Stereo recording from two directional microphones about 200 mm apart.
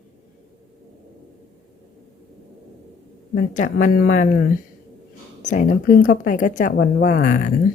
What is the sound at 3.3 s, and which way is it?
Speech, 40° left (ahead or behind).